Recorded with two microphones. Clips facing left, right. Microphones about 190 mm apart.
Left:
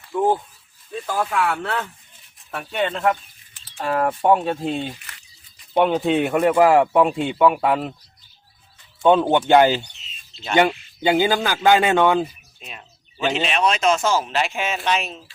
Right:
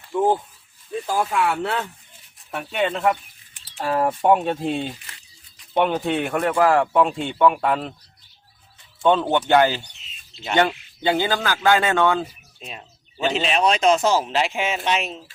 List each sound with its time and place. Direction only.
1.2 s speech: 5° right (ahead or behind)
2.6 s speech: 5° right (ahead or behind)
9.0 s speech: 15° left (ahead or behind)
12.5 s a sound: 30° right (ahead or behind)
13.5 s speech: 35° right (ahead or behind)